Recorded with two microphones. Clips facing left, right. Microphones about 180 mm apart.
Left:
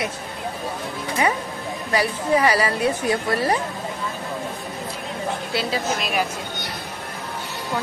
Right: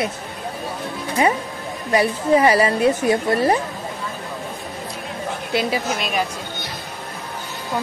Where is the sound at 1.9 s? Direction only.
25° right (ahead or behind).